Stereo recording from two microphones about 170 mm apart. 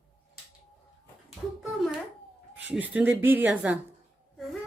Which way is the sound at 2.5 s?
10° right (ahead or behind).